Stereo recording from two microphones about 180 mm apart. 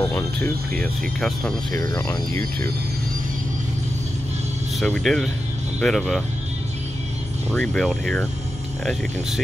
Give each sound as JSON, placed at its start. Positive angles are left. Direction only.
{"t": 0.0, "sound": "speech", "side_deg": 10}
{"t": 1.7, "sound": "speech", "side_deg": 15}
{"t": 4.7, "sound": "speech", "side_deg": 5}
{"t": 7.5, "sound": "speech", "side_deg": 5}